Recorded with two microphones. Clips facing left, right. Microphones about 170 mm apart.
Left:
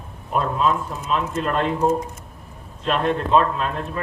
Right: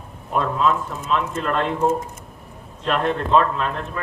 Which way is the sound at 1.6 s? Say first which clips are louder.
Left 1 dB; 5° right (ahead or behind).